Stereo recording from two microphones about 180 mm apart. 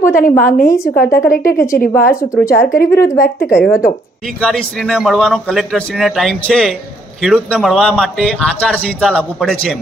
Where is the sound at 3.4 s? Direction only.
5° right (ahead or behind).